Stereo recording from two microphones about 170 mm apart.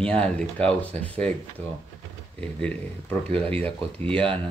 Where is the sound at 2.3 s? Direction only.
5° left (ahead or behind).